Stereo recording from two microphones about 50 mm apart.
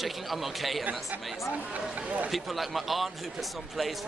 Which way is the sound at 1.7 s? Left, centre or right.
Right.